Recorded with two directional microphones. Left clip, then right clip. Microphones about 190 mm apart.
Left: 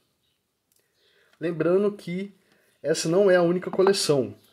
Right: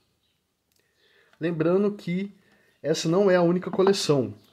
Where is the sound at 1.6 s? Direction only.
20° left (ahead or behind).